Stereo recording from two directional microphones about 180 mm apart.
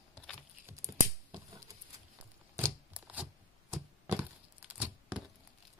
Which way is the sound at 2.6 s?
10° right (ahead or behind).